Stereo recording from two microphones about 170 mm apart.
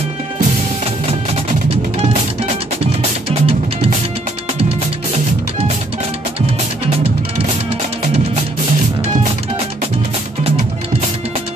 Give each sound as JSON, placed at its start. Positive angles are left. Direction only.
{"t": 3.0, "sound": "music", "side_deg": -35}